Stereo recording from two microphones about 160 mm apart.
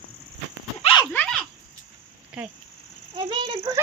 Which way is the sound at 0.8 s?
30° left (ahead or behind).